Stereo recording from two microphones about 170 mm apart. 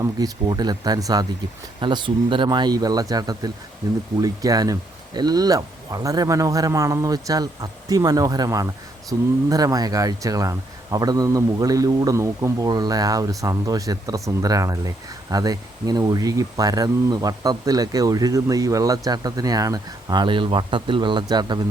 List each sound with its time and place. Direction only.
0.0 s speech: 25° right (ahead or behind)